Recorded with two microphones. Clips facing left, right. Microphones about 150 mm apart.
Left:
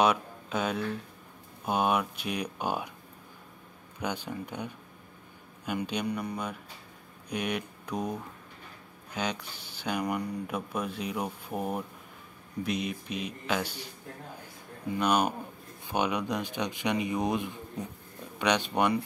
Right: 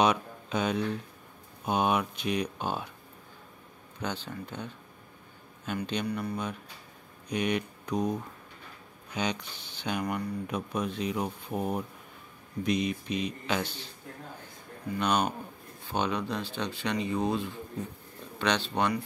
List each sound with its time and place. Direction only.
0.0 s a sound: 5° left (ahead or behind)
1.7 s speech: 5° left (ahead or behind)
4.0 s speech: 10° left (ahead or behind)
7.2 s speech: 5° left (ahead or behind)
15.0 s speech: 10° left (ahead or behind)